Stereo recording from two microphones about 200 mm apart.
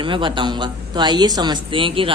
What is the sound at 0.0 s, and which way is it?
Speech, 25° right (ahead or behind).